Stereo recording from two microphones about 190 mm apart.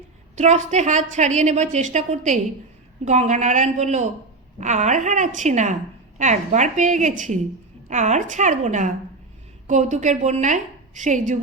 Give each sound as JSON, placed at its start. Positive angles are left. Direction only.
{"t": 0.3, "sound": "a woman's voice", "side_deg": -40}